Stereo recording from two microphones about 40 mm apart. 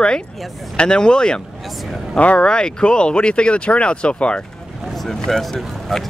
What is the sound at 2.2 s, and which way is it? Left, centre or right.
Speech, left.